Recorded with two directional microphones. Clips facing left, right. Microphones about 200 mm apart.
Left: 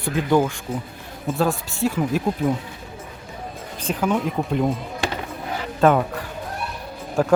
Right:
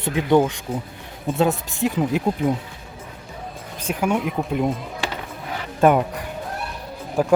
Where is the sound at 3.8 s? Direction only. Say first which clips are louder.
Even; 10° right (ahead or behind).